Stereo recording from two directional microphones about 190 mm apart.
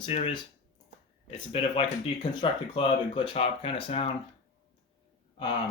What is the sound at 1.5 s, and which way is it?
Speech, 30° left (ahead or behind).